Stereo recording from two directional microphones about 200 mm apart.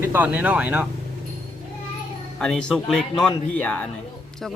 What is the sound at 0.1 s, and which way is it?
Speech, 5° right (ahead or behind).